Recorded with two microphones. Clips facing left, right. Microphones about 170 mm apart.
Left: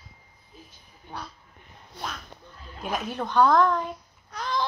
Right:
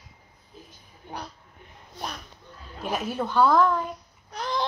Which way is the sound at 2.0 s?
65° left (ahead or behind).